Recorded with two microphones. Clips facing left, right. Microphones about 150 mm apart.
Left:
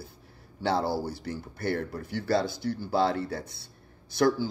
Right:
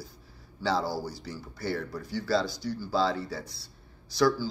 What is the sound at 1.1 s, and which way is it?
A man's voice, 55° left (ahead or behind).